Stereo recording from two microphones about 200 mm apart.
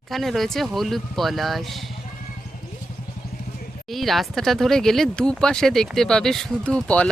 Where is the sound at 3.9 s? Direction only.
Centre (ahead or behind).